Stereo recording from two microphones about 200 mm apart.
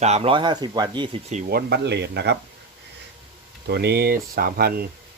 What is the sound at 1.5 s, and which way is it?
Speech, 50° right (ahead or behind).